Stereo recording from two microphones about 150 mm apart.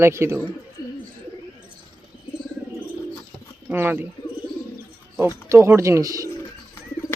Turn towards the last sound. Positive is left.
turn(degrees=-20)  # may be behind; listen again after turning